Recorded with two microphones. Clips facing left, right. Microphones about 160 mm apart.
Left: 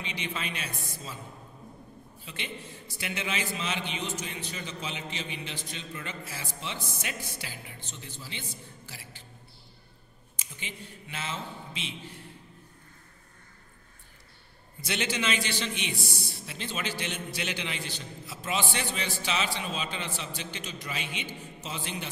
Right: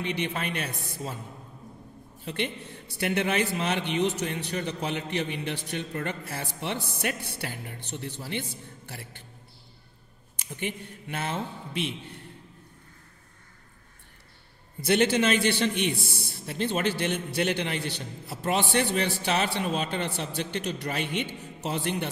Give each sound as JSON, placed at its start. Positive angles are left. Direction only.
{"t": 0.0, "sound": "a man's voice", "side_deg": -60}
{"t": 2.2, "sound": "a man's voice", "side_deg": -60}
{"t": 10.3, "sound": "a man's voice", "side_deg": -60}
{"t": 14.8, "sound": "a man's voice", "side_deg": -55}